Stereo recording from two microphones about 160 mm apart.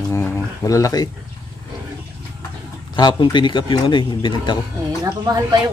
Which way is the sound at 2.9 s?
25° left (ahead or behind).